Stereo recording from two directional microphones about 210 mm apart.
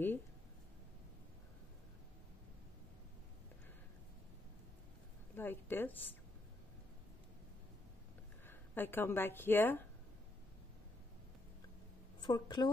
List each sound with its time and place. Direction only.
5.3 s a sound: 10° left (ahead or behind)
8.5 s speech: 10° left (ahead or behind)
12.2 s a woman's voice: 20° left (ahead or behind)